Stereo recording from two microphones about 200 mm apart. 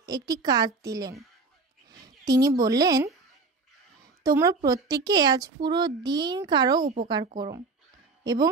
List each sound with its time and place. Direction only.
0.0 s a child's voice: 20° right (ahead or behind)
1.9 s a sound: 20° right (ahead or behind)
2.6 s speech: 20° right (ahead or behind)
4.2 s a woman's voice: 15° right (ahead or behind)